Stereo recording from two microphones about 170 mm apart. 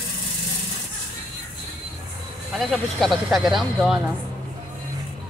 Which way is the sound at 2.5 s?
Centre (ahead or behind).